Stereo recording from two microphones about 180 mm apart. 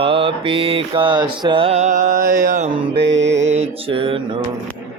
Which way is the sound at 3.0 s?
80° right.